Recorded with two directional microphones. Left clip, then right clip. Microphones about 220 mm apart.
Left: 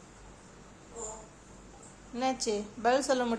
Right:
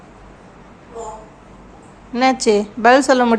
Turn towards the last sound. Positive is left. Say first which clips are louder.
# right 16 dB
turn(degrees=-25)  # may be behind; listen again after turning